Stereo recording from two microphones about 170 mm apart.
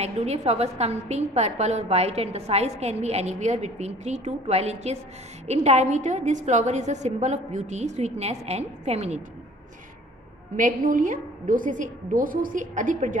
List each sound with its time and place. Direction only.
0.0 s a woman's voice: 40° right (ahead or behind)
10.5 s a woman's voice: 50° right (ahead or behind)